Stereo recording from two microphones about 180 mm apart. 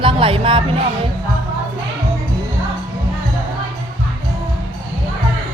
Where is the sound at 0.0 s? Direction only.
30° right (ahead or behind).